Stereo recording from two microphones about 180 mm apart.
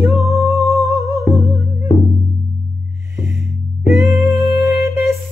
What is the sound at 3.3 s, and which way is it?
Music, 15° right (ahead or behind).